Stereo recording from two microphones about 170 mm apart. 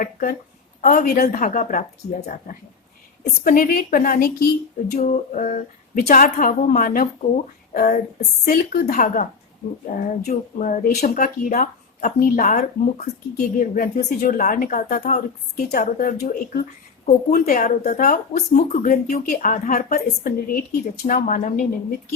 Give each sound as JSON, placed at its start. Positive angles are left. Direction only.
{"t": 0.0, "sound": "speech", "side_deg": 55}
{"t": 3.4, "sound": "speech", "side_deg": 55}
{"t": 5.3, "sound": "a woman's voice", "side_deg": 50}
{"t": 8.4, "sound": "speech", "side_deg": 65}
{"t": 8.9, "sound": "a woman's voice", "side_deg": 50}
{"t": 14.9, "sound": "a woman's voice", "side_deg": 45}